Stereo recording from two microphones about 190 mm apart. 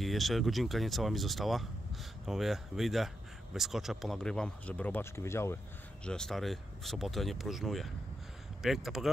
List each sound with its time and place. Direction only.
0.0 s speech: centre (ahead or behind)
6.0 s speech: 5° left (ahead or behind)